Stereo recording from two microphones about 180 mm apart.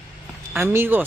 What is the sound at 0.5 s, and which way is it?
Speech, 15° right (ahead or behind).